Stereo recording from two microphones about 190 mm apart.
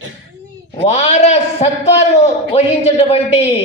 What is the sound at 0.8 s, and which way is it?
A man's voice, 35° left (ahead or behind).